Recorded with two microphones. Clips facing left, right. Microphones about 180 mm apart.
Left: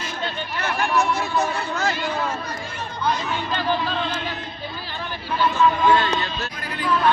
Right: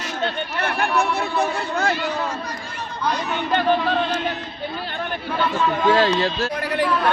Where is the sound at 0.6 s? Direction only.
60° right (ahead or behind).